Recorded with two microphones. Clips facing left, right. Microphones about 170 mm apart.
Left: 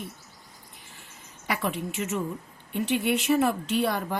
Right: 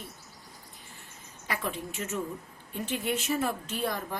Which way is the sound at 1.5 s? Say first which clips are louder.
Left 5 dB; 70° left (ahead or behind).